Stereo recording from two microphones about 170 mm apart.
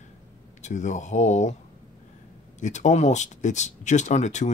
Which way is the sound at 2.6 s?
45° left (ahead or behind).